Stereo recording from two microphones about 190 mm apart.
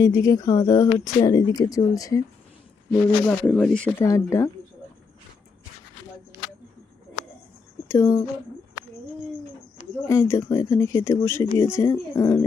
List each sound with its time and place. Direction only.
0.0 s speech: 20° left (ahead or behind)
2.9 s speech: 5° left (ahead or behind)
7.9 s speech: 15° left (ahead or behind)
10.1 s speech: 15° left (ahead or behind)